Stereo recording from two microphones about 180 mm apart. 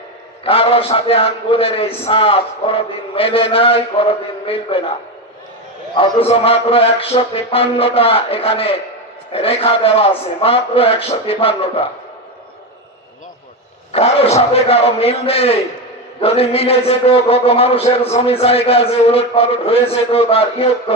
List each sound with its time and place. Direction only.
0.4 s a man's voice: 30° left (ahead or behind)
5.9 s a man's voice: 30° left (ahead or behind)
13.9 s a man's voice: 35° left (ahead or behind)